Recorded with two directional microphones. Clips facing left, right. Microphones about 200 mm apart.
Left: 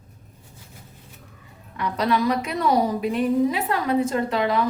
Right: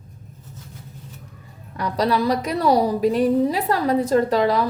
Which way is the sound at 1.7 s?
35° right (ahead or behind).